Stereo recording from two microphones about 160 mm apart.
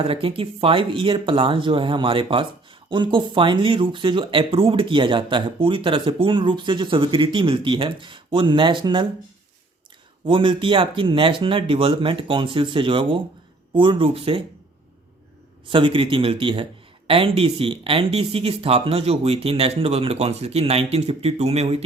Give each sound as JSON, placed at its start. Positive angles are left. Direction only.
{"t": 0.0, "sound": "speech", "side_deg": -35}
{"t": 10.2, "sound": "speech", "side_deg": -30}
{"t": 15.7, "sound": "speech", "side_deg": -30}